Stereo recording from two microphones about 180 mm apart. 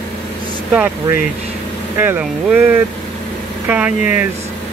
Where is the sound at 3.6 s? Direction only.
10° right (ahead or behind).